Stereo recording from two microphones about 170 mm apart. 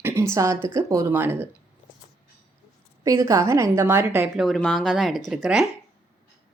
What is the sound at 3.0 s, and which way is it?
A woman's voice, 20° right (ahead or behind).